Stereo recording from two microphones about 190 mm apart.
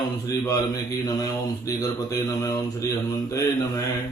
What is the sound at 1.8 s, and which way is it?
Speech, 20° left (ahead or behind).